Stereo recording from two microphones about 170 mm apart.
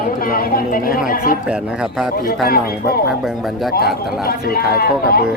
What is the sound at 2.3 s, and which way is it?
Speech, 60° left (ahead or behind).